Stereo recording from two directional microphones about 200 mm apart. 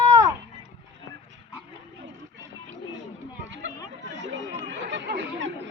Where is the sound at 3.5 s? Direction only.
65° right (ahead or behind).